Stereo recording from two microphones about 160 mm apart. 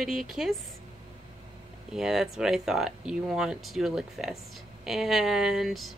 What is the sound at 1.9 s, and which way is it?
Speech, 5° right (ahead or behind).